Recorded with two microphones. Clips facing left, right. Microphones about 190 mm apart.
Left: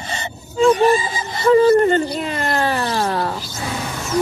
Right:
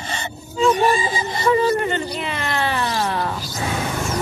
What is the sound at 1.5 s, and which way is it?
Speech, 45° left (ahead or behind).